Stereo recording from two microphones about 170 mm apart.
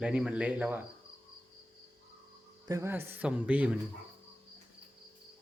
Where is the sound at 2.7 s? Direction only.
15° right (ahead or behind).